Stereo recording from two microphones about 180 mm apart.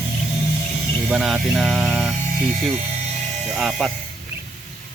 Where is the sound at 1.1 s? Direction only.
5° right (ahead or behind).